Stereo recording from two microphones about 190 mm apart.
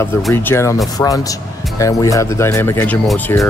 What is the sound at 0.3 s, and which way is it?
Speech, 10° left (ahead or behind).